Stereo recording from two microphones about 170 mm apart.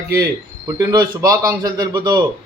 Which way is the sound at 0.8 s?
25° right (ahead or behind).